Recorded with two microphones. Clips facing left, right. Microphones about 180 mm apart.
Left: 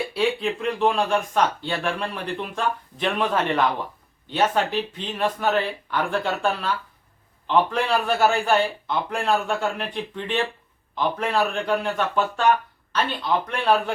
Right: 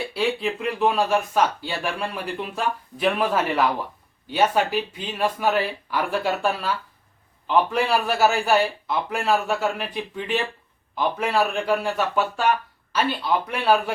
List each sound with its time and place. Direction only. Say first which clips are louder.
0.1 s speech: right 1 dB; centre (ahead or behind)